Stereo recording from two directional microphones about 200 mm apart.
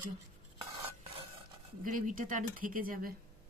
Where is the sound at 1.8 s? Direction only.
40° right (ahead or behind).